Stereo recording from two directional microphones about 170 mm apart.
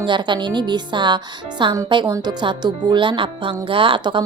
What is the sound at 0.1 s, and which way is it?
A woman's voice, 25° right (ahead or behind).